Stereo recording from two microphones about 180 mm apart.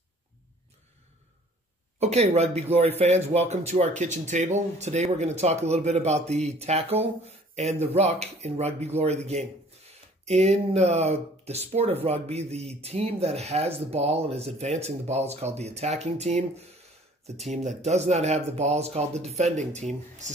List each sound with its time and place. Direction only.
2.0 s speech: 35° right (ahead or behind)